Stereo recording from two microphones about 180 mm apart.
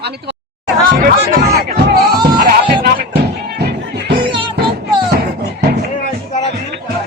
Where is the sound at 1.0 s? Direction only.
60° right (ahead or behind).